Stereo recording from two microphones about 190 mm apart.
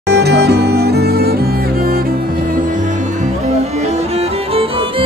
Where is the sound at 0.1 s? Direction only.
60° right (ahead or behind).